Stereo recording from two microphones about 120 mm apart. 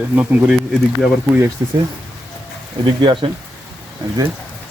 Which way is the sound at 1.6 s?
30° right (ahead or behind).